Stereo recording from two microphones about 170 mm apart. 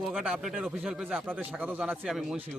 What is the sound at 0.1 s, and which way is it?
A man's voice, centre (ahead or behind).